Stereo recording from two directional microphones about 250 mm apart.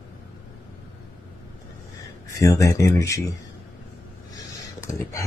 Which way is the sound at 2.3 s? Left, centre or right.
Centre.